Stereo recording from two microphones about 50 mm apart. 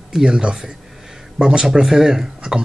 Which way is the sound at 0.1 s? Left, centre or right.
Centre.